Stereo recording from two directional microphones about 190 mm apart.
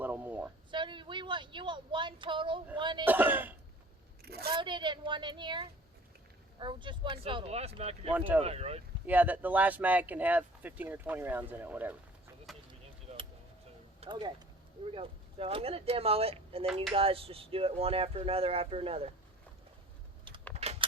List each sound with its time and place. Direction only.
0.0 s a sound: 10° right (ahead or behind)
0.7 s a woman's voice: 25° right (ahead or behind)
3.0 s speech: 10° right (ahead or behind)
4.2 s a woman's voice: 55° right (ahead or behind)
4.5 s speech: 25° right (ahead or behind)
9.0 s speech: 10° right (ahead or behind)
12.5 s a sound: centre (ahead or behind)
14.0 s speech: 25° right (ahead or behind)
20.6 s a sound: 30° right (ahead or behind)